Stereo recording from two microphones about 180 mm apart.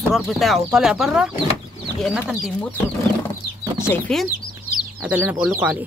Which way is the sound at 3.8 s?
10° left (ahead or behind).